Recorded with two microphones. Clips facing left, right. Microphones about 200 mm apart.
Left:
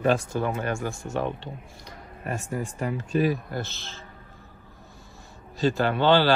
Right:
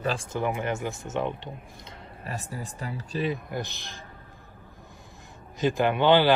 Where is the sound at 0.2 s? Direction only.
20° right (ahead or behind).